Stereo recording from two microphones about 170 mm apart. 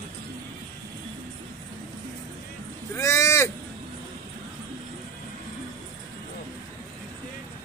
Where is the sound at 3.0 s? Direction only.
15° left (ahead or behind).